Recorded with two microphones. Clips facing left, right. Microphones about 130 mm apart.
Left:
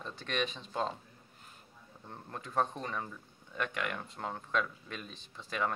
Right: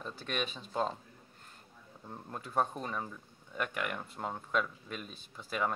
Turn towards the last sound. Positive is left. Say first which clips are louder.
# right 1 dB
turn(degrees=-5)  # may be behind; listen again after turning